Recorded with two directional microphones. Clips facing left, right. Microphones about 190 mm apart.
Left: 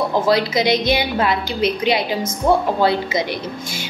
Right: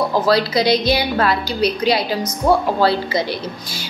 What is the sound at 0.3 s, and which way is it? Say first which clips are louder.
A woman's voice: right 1 dB; 20° left (ahead or behind).